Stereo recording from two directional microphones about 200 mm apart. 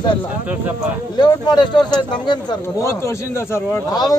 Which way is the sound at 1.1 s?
20° left (ahead or behind).